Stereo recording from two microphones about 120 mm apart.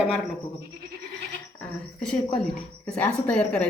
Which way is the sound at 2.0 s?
5° left (ahead or behind).